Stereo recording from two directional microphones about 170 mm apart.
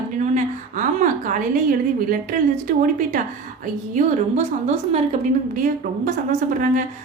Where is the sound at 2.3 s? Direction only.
60° right (ahead or behind).